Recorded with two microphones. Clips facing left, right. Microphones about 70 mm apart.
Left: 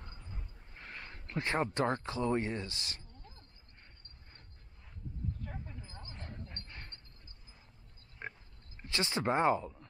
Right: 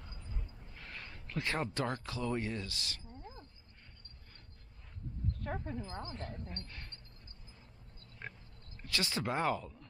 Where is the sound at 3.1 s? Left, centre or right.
Centre.